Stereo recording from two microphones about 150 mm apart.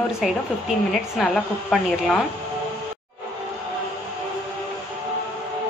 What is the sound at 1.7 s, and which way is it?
Speech, 5° left (ahead or behind).